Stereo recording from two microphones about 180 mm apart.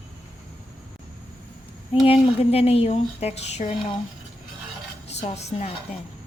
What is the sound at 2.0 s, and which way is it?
Speech, 30° left (ahead or behind).